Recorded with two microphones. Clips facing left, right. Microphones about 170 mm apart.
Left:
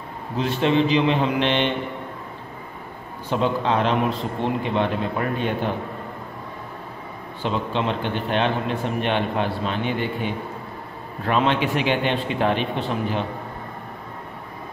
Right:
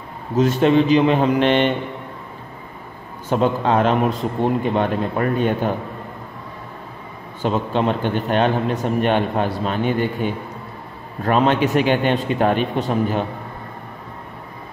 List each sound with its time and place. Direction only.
0.4 s a man's voice: 45° right (ahead or behind)
3.3 s a man's voice: 45° right (ahead or behind)
7.4 s a man's voice: 45° right (ahead or behind)